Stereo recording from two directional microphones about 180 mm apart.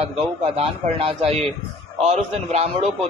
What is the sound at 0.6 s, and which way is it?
A man's voice, 35° right (ahead or behind).